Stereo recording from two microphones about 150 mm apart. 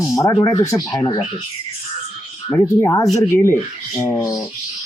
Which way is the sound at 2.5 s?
25° left (ahead or behind).